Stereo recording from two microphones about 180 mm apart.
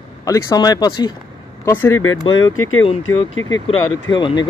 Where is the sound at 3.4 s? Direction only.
90° left.